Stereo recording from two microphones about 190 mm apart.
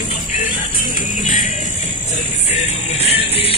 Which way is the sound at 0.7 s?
45° left (ahead or behind).